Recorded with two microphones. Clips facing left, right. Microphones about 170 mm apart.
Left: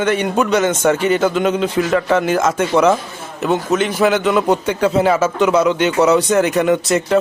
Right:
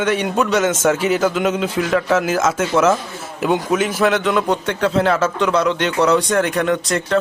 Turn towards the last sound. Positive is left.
turn(degrees=5)  # may be behind; listen again after turning